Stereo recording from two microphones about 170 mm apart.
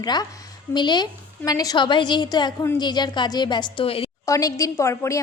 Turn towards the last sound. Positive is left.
turn(degrees=15)  # may be behind; listen again after turning